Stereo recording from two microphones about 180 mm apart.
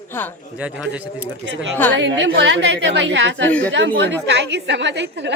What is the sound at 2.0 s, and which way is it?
A woman's voice, 90° right.